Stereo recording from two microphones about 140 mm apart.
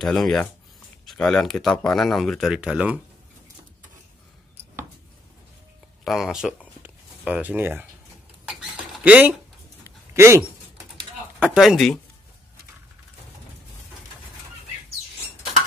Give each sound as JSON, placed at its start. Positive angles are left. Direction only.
{"t": 0.0, "sound": "speech", "side_deg": 0}
{"t": 6.0, "sound": "speech", "side_deg": 0}
{"t": 6.8, "sound": "a sound", "side_deg": -10}
{"t": 11.3, "sound": "speech", "side_deg": -5}